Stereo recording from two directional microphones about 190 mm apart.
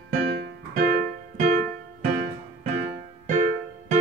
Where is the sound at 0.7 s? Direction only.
40° right (ahead or behind).